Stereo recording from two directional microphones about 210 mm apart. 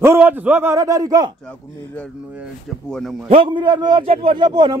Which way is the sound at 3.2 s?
25° right (ahead or behind).